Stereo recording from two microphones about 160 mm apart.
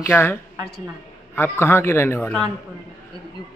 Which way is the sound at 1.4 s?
15° left (ahead or behind).